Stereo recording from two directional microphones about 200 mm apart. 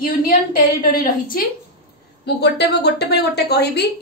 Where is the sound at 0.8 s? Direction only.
45° left (ahead or behind).